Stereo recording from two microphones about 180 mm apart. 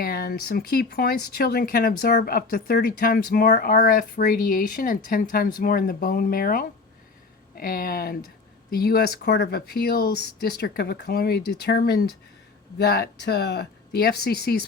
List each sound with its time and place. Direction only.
0.0 s speech: 55° left (ahead or behind)